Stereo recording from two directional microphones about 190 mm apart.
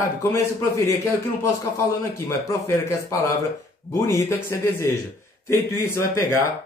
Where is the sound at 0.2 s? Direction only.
15° left (ahead or behind).